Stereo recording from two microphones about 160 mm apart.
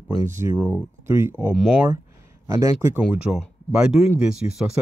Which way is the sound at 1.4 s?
5° right (ahead or behind).